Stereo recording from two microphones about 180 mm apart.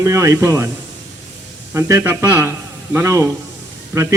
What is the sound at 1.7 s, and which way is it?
A man's voice, 15° right (ahead or behind).